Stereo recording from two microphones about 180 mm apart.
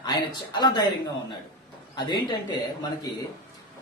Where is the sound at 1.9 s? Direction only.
25° left (ahead or behind).